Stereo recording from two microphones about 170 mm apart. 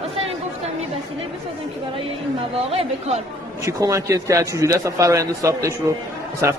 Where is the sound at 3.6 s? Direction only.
20° right (ahead or behind).